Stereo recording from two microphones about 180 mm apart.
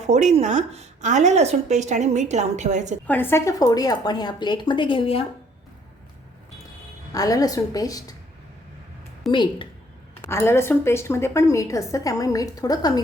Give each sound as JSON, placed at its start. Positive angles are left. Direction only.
{"t": 0.0, "sound": "speech", "side_deg": -40}
{"t": 3.1, "sound": "speech", "side_deg": 10}
{"t": 7.1, "sound": "speech", "side_deg": 20}
{"t": 9.3, "sound": "speech", "side_deg": 25}
{"t": 10.2, "sound": "a woman's voice", "side_deg": 15}